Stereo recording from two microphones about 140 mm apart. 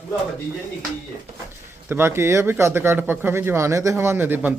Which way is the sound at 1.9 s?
15° right (ahead or behind).